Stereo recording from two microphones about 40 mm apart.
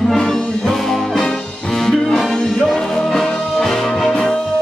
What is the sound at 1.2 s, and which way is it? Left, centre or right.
Music, centre.